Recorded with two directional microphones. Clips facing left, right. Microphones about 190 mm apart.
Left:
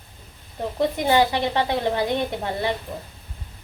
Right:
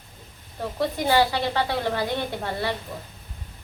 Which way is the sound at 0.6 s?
20° left (ahead or behind).